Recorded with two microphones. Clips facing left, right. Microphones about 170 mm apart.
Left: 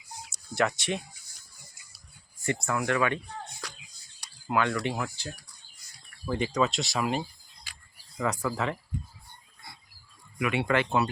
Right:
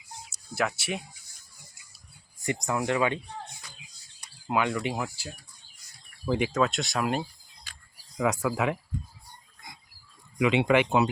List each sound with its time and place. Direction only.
0.5 s speech: 5° right (ahead or behind)
2.4 s speech: 15° right (ahead or behind)
3.6 s a sound: 85° left
4.4 s speech: 15° right (ahead or behind)
10.3 s speech: 20° right (ahead or behind)